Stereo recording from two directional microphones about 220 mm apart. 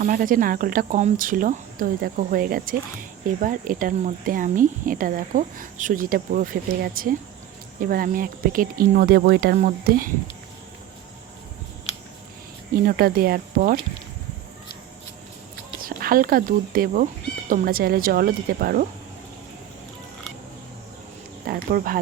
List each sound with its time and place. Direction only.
0.0 s speech: 40° right (ahead or behind)
12.8 s speech: 40° right (ahead or behind)
15.8 s speech: 40° right (ahead or behind)
21.4 s a sound: 40° right (ahead or behind)